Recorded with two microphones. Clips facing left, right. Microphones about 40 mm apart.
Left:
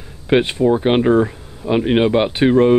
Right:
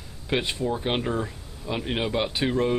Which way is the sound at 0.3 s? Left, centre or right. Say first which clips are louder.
Left 12 dB; left.